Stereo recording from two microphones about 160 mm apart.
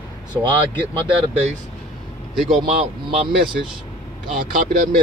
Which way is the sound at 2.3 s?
Centre (ahead or behind).